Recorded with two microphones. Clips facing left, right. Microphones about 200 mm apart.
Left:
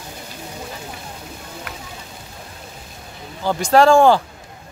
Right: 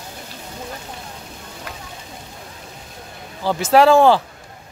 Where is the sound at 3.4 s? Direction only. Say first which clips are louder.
Even; 5° right (ahead or behind).